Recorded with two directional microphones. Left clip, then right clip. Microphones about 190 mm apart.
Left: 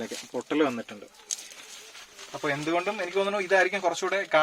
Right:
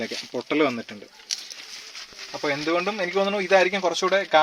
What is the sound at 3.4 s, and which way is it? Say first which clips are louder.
Speech: right 4 dB; 40° right (ahead or behind).